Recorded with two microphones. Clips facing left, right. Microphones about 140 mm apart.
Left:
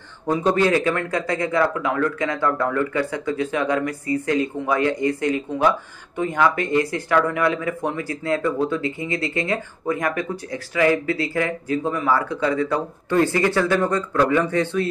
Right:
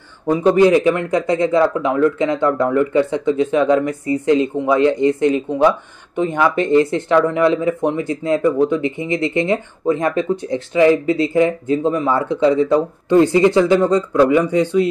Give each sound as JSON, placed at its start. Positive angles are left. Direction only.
{"t": 0.3, "sound": "speech", "side_deg": -15}